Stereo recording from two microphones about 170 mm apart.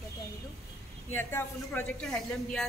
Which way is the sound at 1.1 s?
15° left (ahead or behind).